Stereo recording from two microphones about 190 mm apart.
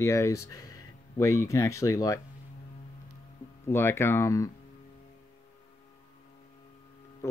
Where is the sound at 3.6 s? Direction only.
15° left (ahead or behind).